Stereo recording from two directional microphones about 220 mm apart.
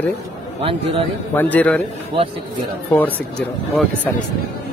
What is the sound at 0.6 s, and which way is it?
Speech, 25° right (ahead or behind).